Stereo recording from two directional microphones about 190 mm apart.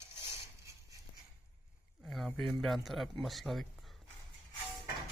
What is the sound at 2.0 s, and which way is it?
Speech, centre (ahead or behind).